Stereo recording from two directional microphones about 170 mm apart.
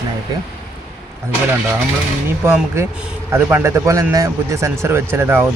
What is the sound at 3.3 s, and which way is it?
A man's voice, 15° right (ahead or behind).